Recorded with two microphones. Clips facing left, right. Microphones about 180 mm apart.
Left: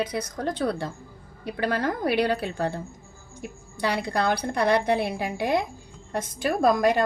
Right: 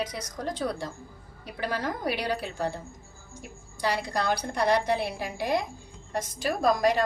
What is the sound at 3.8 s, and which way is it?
A woman's voice, 60° left (ahead or behind).